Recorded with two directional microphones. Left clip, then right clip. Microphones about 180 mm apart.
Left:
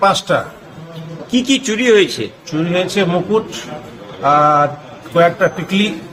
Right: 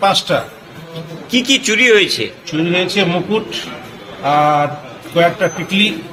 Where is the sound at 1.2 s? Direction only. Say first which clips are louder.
Right 2 dB; 45° left (ahead or behind).